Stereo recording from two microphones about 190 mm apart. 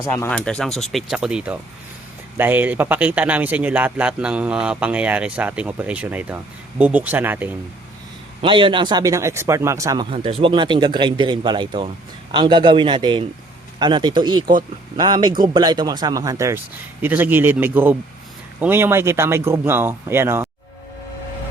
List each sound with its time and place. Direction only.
0.0 s speech: 10° left (ahead or behind); by 7.5 s 10° right (ahead or behind)
8.4 s a man's voice: 25° right (ahead or behind)